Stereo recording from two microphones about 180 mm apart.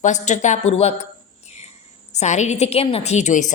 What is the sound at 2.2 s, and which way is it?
A woman's voice, 40° left (ahead or behind).